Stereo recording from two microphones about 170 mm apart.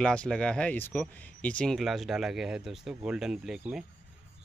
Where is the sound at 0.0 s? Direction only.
5° left (ahead or behind).